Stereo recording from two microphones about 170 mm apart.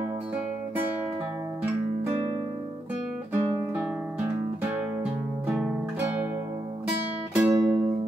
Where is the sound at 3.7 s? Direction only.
10° right (ahead or behind).